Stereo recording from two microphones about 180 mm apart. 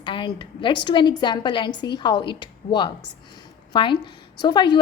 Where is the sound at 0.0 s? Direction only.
25° left (ahead or behind).